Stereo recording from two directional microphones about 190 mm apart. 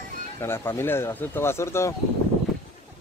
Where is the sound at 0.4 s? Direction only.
10° left (ahead or behind).